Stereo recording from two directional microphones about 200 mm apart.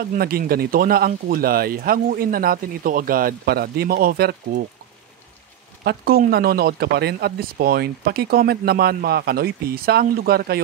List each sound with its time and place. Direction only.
0.0 s speech: 50° right (ahead or behind)
5.9 s speech: 50° right (ahead or behind)